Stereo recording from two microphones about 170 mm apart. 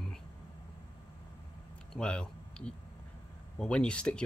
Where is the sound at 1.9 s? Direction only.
5° left (ahead or behind).